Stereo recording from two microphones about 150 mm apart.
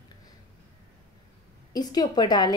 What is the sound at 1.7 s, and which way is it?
Speech, 25° left (ahead or behind).